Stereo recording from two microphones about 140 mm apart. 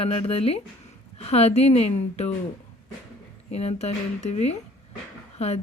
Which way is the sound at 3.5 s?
50° left (ahead or behind).